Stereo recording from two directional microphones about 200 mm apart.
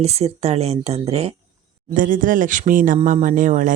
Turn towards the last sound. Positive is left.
turn(degrees=-40)  # may be behind; listen again after turning